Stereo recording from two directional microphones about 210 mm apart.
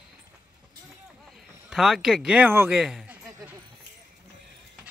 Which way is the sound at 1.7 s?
Centre (ahead or behind).